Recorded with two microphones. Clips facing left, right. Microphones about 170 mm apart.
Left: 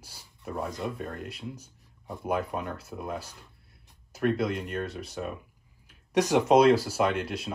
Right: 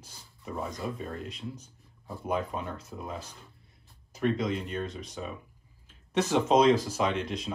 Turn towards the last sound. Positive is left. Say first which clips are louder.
# left 2 dB
turn(degrees=5)  # may be behind; listen again after turning